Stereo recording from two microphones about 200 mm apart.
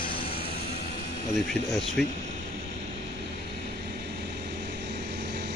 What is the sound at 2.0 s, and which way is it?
Speech, centre (ahead or behind).